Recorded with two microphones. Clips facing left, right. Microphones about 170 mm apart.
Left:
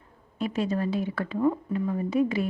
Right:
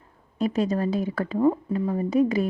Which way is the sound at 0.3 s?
40° right (ahead or behind).